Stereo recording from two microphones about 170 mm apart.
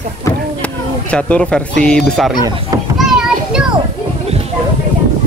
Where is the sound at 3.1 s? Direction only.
5° right (ahead or behind).